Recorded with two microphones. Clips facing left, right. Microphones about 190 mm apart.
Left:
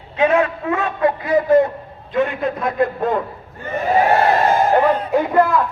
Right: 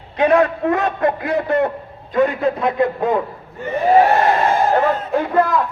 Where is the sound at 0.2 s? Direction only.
35° right (ahead or behind).